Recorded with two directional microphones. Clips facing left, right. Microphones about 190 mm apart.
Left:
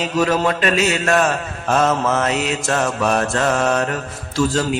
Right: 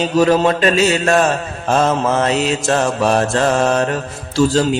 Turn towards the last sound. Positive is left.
turn(degrees=-30)  # may be behind; listen again after turning